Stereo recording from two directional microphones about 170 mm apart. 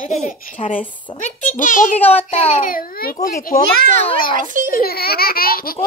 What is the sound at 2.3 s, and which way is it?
Speech, 40° left (ahead or behind).